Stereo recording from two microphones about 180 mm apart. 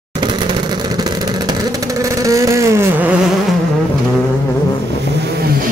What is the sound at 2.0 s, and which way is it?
Vehicle, 20° right (ahead or behind).